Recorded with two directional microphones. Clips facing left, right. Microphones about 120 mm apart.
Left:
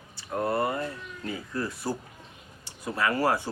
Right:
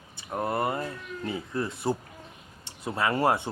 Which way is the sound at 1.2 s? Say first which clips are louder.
Right 1 dB; 25° right (ahead or behind).